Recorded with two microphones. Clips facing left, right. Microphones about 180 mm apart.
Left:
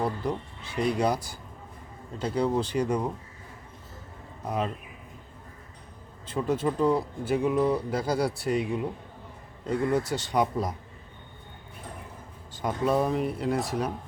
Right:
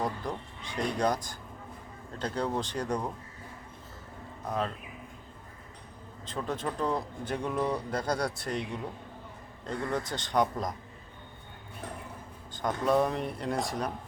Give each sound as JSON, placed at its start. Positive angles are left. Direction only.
{"t": 0.0, "sound": "speech", "side_deg": 5}
{"t": 4.4, "sound": "speech", "side_deg": 10}
{"t": 6.2, "sound": "speech", "side_deg": 10}
{"t": 12.5, "sound": "speech", "side_deg": 5}